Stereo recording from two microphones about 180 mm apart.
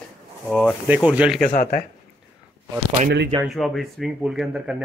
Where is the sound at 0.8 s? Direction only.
10° right (ahead or behind).